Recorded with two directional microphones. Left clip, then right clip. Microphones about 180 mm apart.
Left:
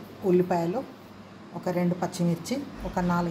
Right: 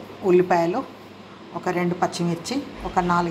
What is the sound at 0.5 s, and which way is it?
A woman's voice, 5° left (ahead or behind).